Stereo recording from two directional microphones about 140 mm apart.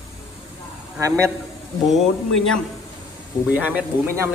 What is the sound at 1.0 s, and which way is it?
Speech, 20° right (ahead or behind).